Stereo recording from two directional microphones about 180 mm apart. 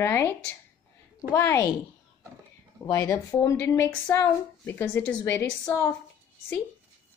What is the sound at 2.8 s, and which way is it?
A woman's voice, 15° left (ahead or behind).